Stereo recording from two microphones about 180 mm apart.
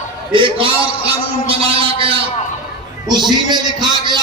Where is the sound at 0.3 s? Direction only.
30° right (ahead or behind).